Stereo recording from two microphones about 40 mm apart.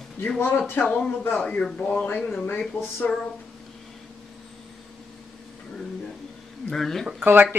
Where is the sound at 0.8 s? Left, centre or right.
Left.